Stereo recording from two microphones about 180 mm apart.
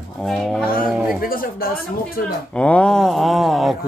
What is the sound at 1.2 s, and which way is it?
Speech, 50° left (ahead or behind).